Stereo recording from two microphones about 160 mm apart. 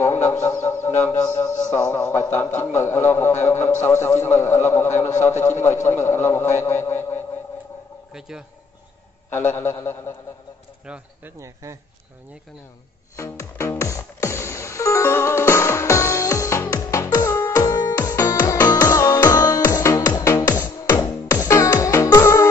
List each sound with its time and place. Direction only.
0.0 s a sound: 15° left (ahead or behind)
1.7 s a man's voice: 20° left (ahead or behind)
8.1 s speech: 5° right (ahead or behind)
9.3 s a man's voice: 15° left (ahead or behind)
11.3 s speech: 20° right (ahead or behind)
13.1 s music: 20° left (ahead or behind)